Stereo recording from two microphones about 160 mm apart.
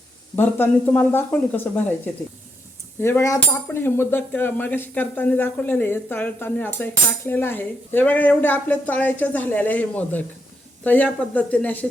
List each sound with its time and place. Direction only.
0.3 s speech: 10° left (ahead or behind)
3.0 s speech: 15° left (ahead or behind)